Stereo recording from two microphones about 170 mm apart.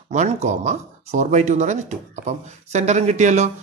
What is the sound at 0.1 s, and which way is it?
Speech, 45° right (ahead or behind).